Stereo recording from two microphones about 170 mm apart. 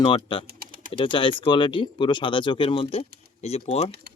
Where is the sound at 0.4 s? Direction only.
60° right (ahead or behind).